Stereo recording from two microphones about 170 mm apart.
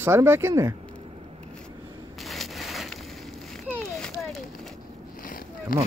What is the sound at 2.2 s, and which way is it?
Crushing, centre (ahead or behind).